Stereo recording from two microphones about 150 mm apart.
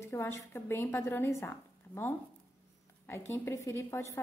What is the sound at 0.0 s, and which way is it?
A woman's voice, 20° left (ahead or behind).